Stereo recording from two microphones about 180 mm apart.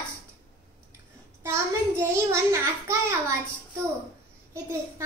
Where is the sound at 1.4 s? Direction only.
15° right (ahead or behind).